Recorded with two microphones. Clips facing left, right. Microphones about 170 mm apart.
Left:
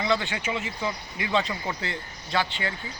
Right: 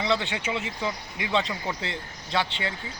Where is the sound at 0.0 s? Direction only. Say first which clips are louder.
Even; 20° right (ahead or behind).